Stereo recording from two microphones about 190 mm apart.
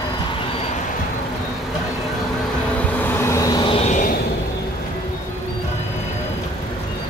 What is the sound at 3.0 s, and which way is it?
Vehicle, 10° left (ahead or behind).